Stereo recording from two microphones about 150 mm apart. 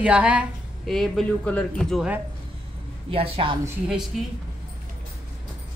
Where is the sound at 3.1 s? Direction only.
35° right (ahead or behind).